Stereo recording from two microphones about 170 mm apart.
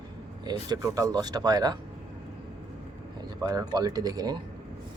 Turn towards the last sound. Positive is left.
turn(degrees=-25)  # may be behind; listen again after turning